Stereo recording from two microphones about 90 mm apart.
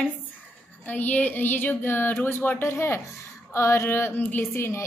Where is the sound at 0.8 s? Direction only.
20° left (ahead or behind).